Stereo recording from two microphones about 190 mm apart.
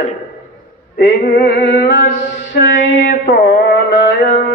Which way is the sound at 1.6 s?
65° left (ahead or behind).